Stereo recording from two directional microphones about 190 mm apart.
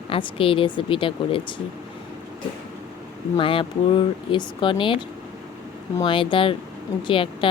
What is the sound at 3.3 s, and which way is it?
Speech, 25° left (ahead or behind).